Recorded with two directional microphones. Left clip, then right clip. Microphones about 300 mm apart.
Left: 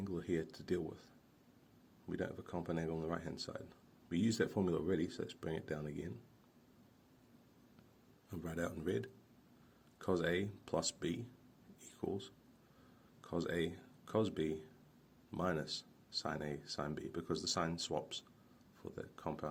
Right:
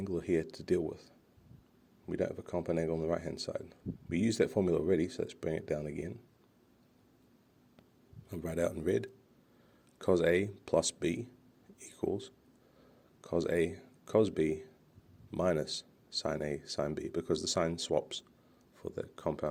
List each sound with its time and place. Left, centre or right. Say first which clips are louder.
0.0 s speech: right 7 dB; right
2.0 s speech: right 8 dB; right
8.3 s speech: right 9 dB; right
11.8 s a sound: right 7 dB; right
13.2 s speech: right 8 dB; right